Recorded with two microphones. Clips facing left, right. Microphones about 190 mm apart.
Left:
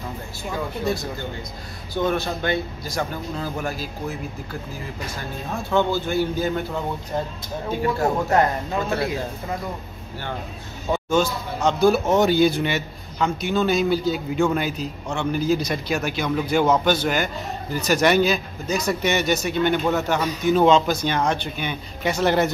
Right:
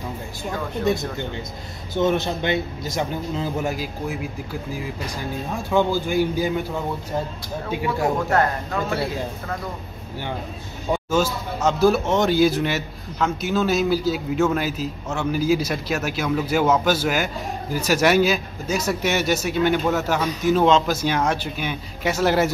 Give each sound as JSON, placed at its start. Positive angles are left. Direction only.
{"t": 2.0, "sound": "a man's voice", "side_deg": -20}
{"t": 8.3, "sound": "speech", "side_deg": 20}
{"t": 10.9, "sound": "speech", "side_deg": -5}
{"t": 12.1, "sound": "a man's voice", "side_deg": 10}